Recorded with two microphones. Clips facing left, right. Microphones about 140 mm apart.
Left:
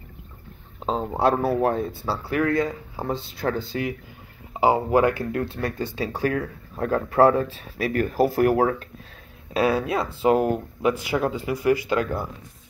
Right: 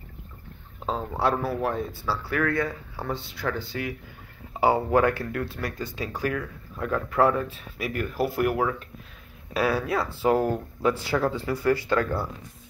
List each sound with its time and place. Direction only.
0.7 s speech: 20° left (ahead or behind)
4.6 s speech: 15° left (ahead or behind); by 8.8 s 40° left (ahead or behind)
9.5 s speech: 25° left (ahead or behind)